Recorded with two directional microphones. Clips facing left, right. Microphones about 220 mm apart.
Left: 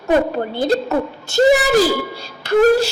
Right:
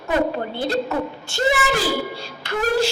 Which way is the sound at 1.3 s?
40° left (ahead or behind).